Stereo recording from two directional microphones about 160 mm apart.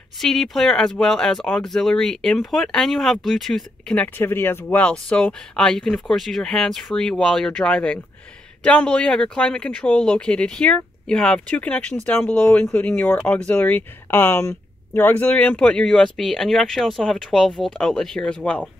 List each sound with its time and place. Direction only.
0.2 s speech: centre (ahead or behind)